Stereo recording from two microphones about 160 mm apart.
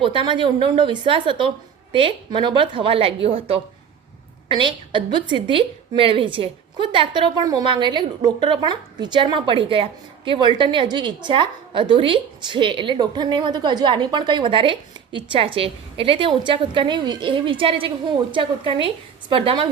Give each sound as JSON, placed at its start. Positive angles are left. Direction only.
{"t": 0.0, "sound": "a woman's voice", "side_deg": -35}